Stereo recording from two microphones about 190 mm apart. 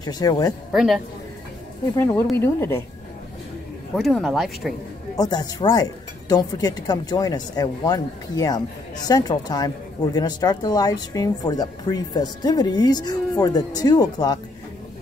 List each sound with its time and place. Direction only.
0.0 s speech: 20° left (ahead or behind)
0.7 s speech: centre (ahead or behind)
2.3 s speech: 15° left (ahead or behind)
3.9 s speech: centre (ahead or behind)
5.1 s speech: 20° left (ahead or behind)